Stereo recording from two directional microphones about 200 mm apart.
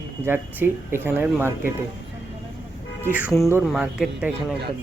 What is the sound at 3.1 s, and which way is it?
Speech, 5° right (ahead or behind).